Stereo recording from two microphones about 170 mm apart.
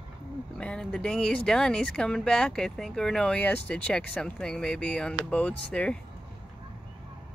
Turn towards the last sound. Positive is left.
turn(degrees=5)  # may be behind; listen again after turning